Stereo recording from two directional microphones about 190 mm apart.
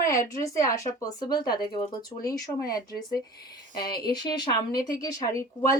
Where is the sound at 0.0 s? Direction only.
15° left (ahead or behind).